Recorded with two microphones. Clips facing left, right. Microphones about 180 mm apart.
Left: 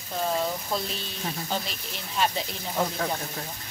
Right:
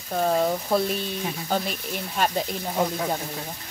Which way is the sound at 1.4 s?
50° right (ahead or behind).